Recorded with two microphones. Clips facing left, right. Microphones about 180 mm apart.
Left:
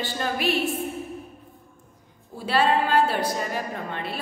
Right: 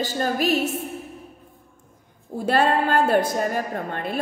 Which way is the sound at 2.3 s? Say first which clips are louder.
Right 2 dB; 50° right (ahead or behind).